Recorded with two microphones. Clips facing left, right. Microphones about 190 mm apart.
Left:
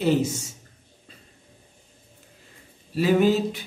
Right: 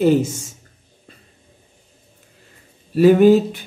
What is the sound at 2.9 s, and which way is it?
Speech, 50° right (ahead or behind).